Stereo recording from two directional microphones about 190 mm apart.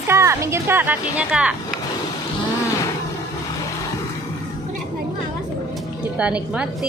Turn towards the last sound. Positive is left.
turn(degrees=-5)  # may be behind; listen again after turning